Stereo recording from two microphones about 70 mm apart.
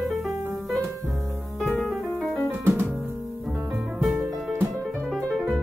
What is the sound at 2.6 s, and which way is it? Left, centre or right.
Music, right.